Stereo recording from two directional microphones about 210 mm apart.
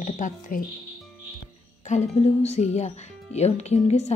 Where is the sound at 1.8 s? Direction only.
35° left (ahead or behind).